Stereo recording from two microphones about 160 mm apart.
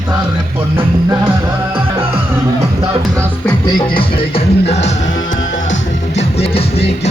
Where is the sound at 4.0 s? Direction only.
40° left (ahead or behind).